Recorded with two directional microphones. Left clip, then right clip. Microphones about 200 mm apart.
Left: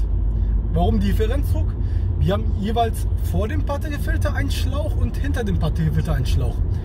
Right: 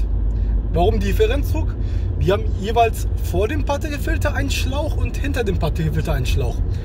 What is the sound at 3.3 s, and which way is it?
Speech, 30° right (ahead or behind).